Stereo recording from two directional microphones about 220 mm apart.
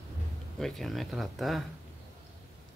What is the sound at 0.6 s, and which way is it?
Speech, centre (ahead or behind).